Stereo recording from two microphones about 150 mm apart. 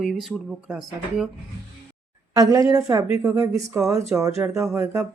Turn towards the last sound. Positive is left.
turn(degrees=-20)  # may be behind; listen again after turning